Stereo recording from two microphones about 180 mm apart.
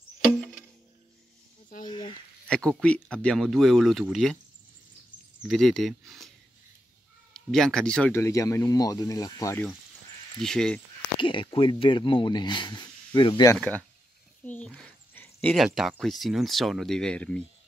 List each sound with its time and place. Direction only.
1.9 s speech: 25° left (ahead or behind)
2.4 s speech: 5° left (ahead or behind)
5.4 s speech: centre (ahead or behind)
7.3 s speech: 5° left (ahead or behind)
8.1 s speech: 15° left (ahead or behind)
10.4 s speech: 5° left (ahead or behind)
11.1 s speech: 25° left (ahead or behind)
13.6 s speech: 10° left (ahead or behind)